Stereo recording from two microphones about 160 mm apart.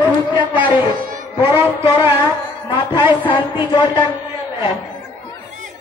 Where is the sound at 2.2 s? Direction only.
30° left (ahead or behind).